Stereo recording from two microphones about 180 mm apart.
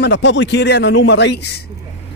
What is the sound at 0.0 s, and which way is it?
A man's voice, 80° left.